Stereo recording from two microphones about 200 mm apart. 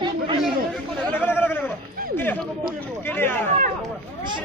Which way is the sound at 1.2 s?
10° left (ahead or behind).